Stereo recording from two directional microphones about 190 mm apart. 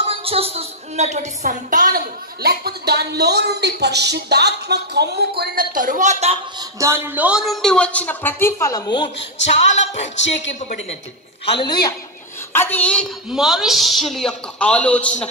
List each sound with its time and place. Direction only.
0.0 s a woman's voice: 30° right (ahead or behind)
6.6 s a man's voice: 15° right (ahead or behind); by 9.1 s 20° left (ahead or behind)
9.6 s a sound: 35° left (ahead or behind)
12.5 s a woman's voice: 10° left (ahead or behind)